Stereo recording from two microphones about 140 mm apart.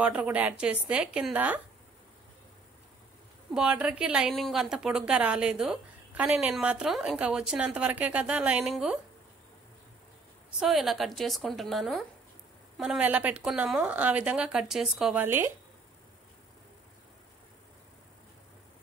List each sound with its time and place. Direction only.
0.0 s a woman's voice: 10° right (ahead or behind)
3.5 s a woman's voice: 10° right (ahead or behind)
10.6 s a woman's voice: centre (ahead or behind)
15.2 s a woman's voice: 15° right (ahead or behind)